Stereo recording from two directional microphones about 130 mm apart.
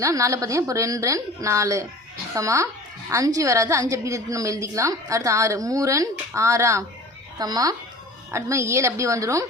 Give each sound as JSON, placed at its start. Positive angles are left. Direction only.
{"t": 0.0, "sound": "a woman's voice", "side_deg": -25}